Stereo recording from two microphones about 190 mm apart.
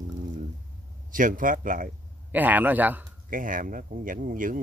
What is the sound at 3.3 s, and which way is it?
Speech, 45° right (ahead or behind).